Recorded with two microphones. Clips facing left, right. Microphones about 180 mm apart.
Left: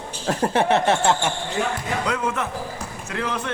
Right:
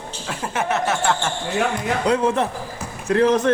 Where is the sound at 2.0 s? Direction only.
30° right (ahead or behind).